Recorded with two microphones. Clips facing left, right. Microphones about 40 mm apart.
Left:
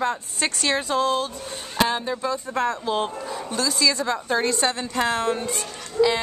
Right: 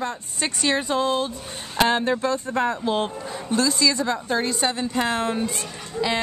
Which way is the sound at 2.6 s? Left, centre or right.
Centre.